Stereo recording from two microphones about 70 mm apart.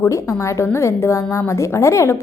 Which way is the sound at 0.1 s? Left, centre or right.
Left.